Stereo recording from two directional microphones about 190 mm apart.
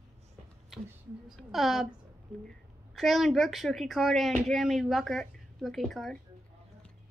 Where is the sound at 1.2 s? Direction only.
Centre (ahead or behind).